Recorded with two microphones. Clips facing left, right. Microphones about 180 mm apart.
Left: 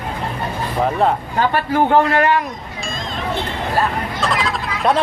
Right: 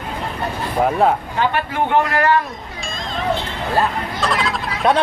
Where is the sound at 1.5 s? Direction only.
40° left (ahead or behind).